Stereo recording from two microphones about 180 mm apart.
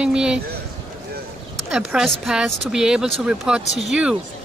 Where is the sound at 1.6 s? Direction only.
5° right (ahead or behind).